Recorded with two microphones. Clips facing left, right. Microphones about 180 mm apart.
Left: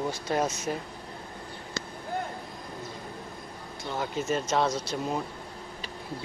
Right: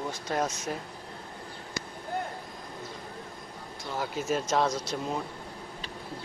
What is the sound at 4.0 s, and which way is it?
Speech, 5° right (ahead or behind).